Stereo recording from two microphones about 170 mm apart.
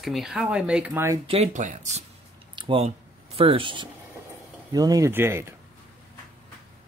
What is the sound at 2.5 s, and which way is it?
Speech, 30° right (ahead or behind).